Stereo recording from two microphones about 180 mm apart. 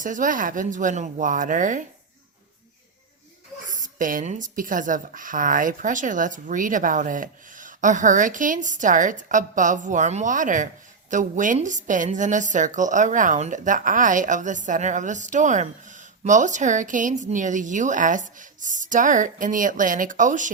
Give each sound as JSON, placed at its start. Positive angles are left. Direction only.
{"t": 0.0, "sound": "a woman's voice", "side_deg": -45}
{"t": 3.7, "sound": "a woman's voice", "side_deg": -45}